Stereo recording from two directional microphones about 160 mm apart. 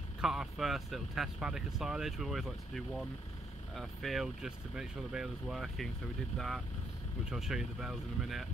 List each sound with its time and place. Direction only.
0.2 s speech: centre (ahead or behind)